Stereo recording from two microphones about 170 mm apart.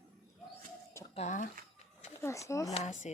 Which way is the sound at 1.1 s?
40° left (ahead or behind).